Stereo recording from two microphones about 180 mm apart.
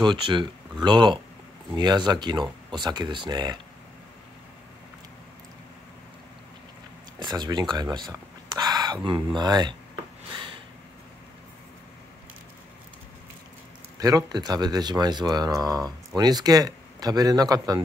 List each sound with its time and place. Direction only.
0.0 s speech: 25° right (ahead or behind)
7.2 s speech: 25° right (ahead or behind)
13.9 s speech: 20° right (ahead or behind)